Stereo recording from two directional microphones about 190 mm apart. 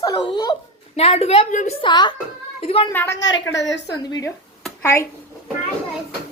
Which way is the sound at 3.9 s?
20° left (ahead or behind).